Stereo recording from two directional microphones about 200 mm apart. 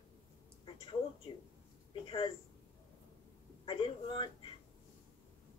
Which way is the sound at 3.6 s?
25° left (ahead or behind).